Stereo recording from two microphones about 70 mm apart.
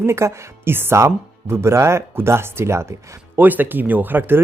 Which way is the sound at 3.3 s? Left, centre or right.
Right.